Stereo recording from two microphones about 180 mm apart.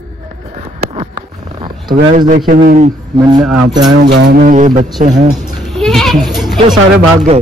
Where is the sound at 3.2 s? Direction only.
25° right (ahead or behind).